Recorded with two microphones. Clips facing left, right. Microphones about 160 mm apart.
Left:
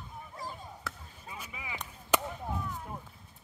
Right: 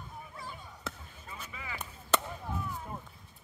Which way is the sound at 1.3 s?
15° left (ahead or behind).